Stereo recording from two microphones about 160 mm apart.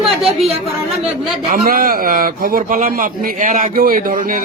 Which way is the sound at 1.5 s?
60° right (ahead or behind).